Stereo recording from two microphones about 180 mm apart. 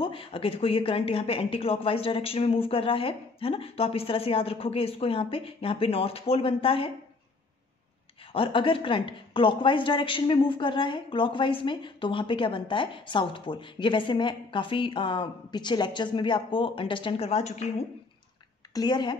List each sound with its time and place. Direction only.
0.0 s speech: 30° left (ahead or behind)
8.3 s speech: 30° left (ahead or behind)
18.7 s a woman's voice: 20° left (ahead or behind)